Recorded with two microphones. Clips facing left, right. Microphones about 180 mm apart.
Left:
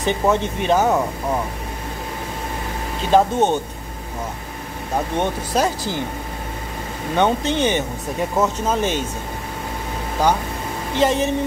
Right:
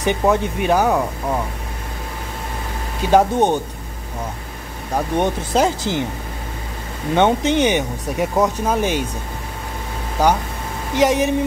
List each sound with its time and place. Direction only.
0.0 s speech: 15° right (ahead or behind)
3.1 s speech: 15° right (ahead or behind)
5.1 s speech: 20° right (ahead or behind)
7.2 s speech: 20° right (ahead or behind)
11.0 s speech: 15° right (ahead or behind)